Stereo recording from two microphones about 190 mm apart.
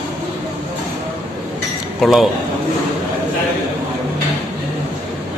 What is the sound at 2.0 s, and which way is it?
Speech, centre (ahead or behind).